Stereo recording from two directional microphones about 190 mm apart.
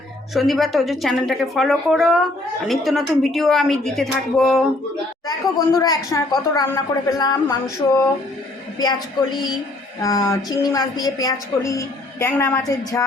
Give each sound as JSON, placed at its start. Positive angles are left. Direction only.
{"t": 0.3, "sound": "a woman's voice", "side_deg": 0}
{"t": 5.2, "sound": "a woman's voice", "side_deg": 20}
{"t": 10.0, "sound": "a woman's voice", "side_deg": 15}